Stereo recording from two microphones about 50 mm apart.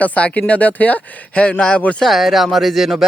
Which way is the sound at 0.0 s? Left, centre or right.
Left.